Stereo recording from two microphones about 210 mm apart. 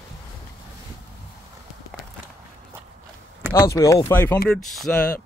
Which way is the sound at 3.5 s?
15° left (ahead or behind).